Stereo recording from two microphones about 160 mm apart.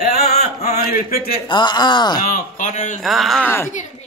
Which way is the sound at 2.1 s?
60° left (ahead or behind).